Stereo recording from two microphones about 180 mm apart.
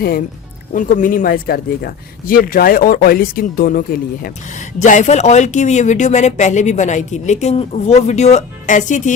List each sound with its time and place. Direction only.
0.7 s speech: 50° left (ahead or behind)